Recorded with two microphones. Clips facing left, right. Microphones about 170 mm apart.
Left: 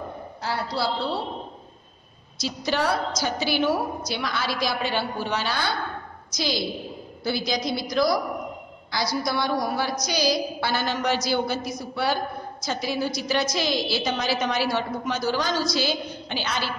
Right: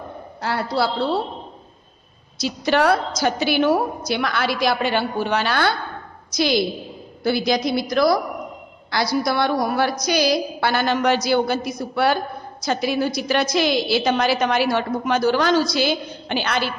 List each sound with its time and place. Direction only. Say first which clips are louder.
0.4 s a man's voice: right 6 dB; 65° right (ahead or behind)
2.3 s a woman's voice: right 6 dB; 60° right (ahead or behind)